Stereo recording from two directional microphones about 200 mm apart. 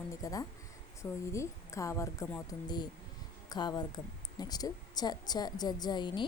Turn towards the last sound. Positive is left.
turn(degrees=20)  # may be behind; listen again after turning